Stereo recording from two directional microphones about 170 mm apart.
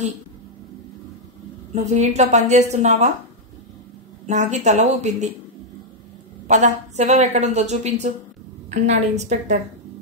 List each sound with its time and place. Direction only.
1.7 s a woman's voice: 40° right (ahead or behind)
4.3 s a woman's voice: 45° right (ahead or behind)
6.4 s a woman's voice: 45° right (ahead or behind)